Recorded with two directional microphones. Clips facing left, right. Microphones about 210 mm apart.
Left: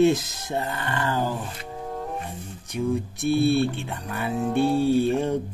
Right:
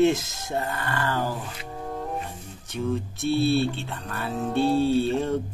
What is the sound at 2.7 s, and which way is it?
Speech, 15° left (ahead or behind).